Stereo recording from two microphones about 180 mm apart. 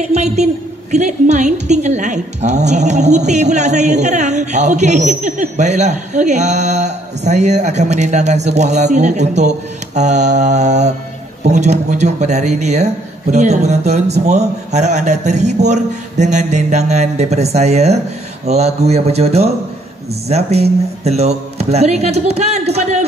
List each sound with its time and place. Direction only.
0.0 s a woman's voice: 40° right (ahead or behind)